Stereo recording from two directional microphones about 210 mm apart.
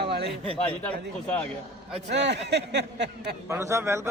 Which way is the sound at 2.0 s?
55° right (ahead or behind).